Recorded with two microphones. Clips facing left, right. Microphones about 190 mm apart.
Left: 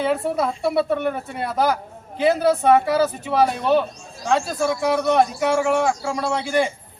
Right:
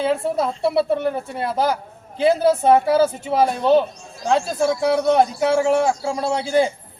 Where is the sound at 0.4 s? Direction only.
25° right (ahead or behind).